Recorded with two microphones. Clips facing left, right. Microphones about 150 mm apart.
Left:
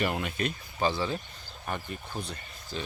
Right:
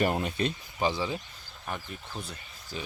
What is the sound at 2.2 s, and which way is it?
Speech, 5° right (ahead or behind).